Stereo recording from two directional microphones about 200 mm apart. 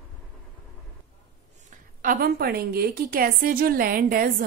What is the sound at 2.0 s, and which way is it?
A woman's voice, 45° right (ahead or behind).